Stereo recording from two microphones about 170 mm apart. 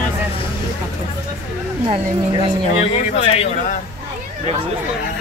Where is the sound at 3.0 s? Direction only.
40° left (ahead or behind).